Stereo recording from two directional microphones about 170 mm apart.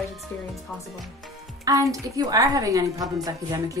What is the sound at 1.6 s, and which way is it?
A woman's voice, 20° right (ahead or behind).